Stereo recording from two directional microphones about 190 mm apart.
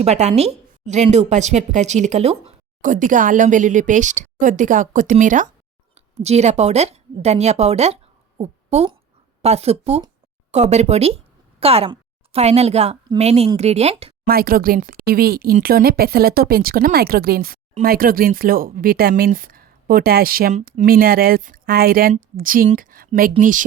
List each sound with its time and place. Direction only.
0.0 s a woman's voice: 35° right (ahead or behind)
14.3 s speech: 50° right (ahead or behind)